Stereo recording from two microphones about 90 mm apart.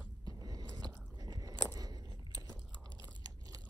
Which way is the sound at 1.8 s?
45° right (ahead or behind).